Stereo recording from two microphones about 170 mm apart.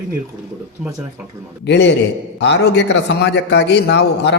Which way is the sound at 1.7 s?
85° left.